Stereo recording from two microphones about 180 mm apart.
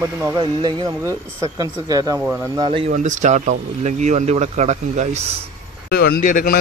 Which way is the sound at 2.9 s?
45° right (ahead or behind).